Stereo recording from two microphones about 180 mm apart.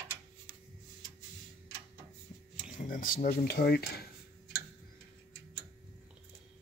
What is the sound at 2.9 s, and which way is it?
Speech, 50° left (ahead or behind).